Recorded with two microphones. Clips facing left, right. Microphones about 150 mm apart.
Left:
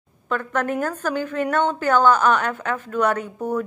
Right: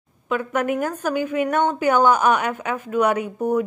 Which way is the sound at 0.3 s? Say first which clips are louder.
Right 2 dB; 10° right (ahead or behind).